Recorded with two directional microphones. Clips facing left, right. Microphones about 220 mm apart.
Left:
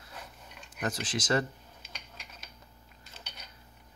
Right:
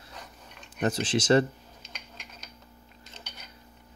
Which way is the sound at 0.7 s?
30° right (ahead or behind).